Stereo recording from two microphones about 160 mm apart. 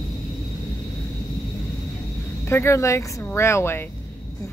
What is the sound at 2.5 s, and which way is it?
Speech, 15° left (ahead or behind).